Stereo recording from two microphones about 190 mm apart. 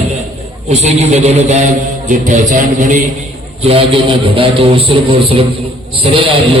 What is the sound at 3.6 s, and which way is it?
A man's voice, 30° right (ahead or behind).